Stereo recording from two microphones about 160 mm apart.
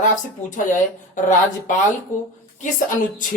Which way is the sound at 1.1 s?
55° left (ahead or behind).